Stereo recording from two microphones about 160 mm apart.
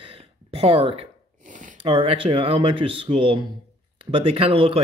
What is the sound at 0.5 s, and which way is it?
Speech, 40° right (ahead or behind).